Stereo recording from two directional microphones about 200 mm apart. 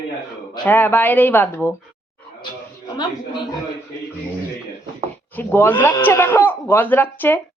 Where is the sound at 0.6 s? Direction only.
10° left (ahead or behind).